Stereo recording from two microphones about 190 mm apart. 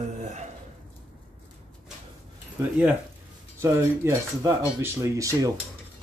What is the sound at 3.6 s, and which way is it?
Speech, 15° right (ahead or behind).